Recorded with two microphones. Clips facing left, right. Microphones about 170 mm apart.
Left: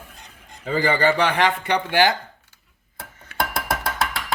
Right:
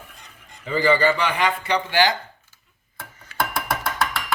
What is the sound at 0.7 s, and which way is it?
A man's voice, 50° left (ahead or behind).